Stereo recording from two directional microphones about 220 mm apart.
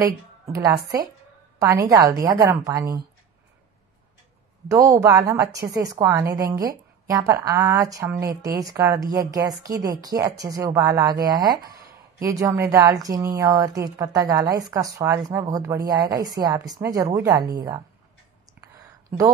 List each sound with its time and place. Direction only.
1.6 s speech: 10° right (ahead or behind)
4.6 s speech: 15° right (ahead or behind)